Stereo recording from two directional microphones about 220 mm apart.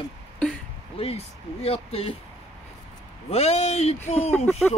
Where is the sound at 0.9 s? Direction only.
25° left (ahead or behind).